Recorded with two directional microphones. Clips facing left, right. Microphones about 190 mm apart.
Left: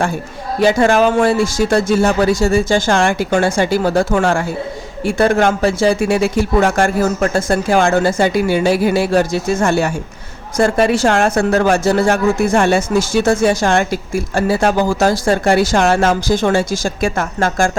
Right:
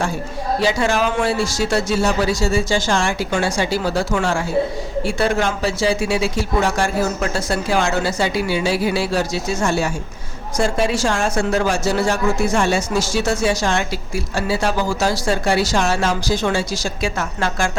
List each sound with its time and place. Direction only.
0.6 s a man's voice: 55° left (ahead or behind)